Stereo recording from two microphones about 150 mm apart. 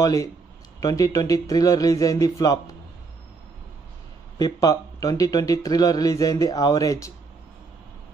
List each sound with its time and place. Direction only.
0.0 s speech: 20° left (ahead or behind)
4.6 s speech: 25° left (ahead or behind)